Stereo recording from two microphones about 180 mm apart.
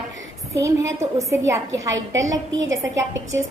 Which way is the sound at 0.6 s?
15° right (ahead or behind).